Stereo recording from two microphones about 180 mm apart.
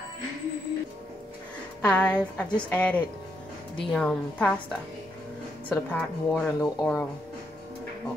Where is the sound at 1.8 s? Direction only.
10° left (ahead or behind).